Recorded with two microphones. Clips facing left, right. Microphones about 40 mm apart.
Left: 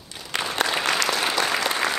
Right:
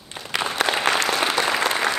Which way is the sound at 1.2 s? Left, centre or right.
Centre.